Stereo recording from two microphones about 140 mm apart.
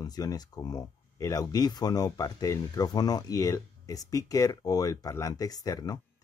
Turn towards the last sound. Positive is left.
turn(degrees=25)  # may be behind; listen again after turning